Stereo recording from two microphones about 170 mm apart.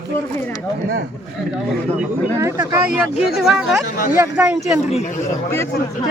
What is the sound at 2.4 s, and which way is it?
Speech, 15° right (ahead or behind).